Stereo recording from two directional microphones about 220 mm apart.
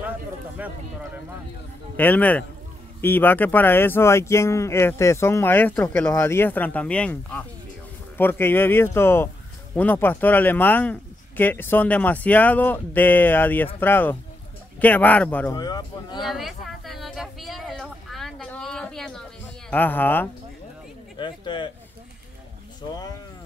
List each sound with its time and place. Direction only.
0.6 s speech: 5° right (ahead or behind)
2.0 s speech: 10° left (ahead or behind)
16.3 s a sound: centre (ahead or behind)
19.7 s speech: 10° left (ahead or behind)
21.2 s speech: 20° left (ahead or behind)
22.8 s speech: 20° left (ahead or behind)